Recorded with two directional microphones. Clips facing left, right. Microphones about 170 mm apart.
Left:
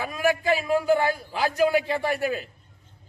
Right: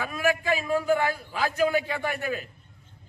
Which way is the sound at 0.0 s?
30° left (ahead or behind).